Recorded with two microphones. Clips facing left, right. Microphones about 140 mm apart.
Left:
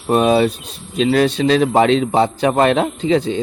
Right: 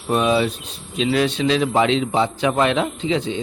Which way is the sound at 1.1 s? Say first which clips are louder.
Left 4 dB; 40° left (ahead or behind).